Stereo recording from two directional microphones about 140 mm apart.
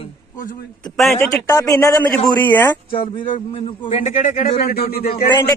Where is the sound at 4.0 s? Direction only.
65° left (ahead or behind).